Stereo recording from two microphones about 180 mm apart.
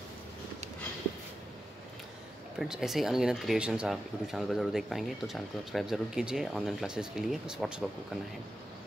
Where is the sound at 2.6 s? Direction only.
Centre (ahead or behind).